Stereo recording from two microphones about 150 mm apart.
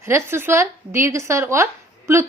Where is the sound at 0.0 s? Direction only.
15° right (ahead or behind).